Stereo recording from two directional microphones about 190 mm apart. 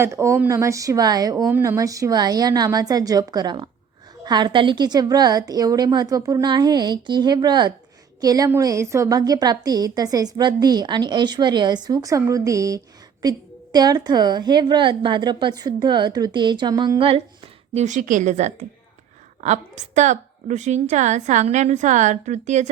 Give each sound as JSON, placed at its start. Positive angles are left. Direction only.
{"t": 0.0, "sound": "a woman's voice", "side_deg": -15}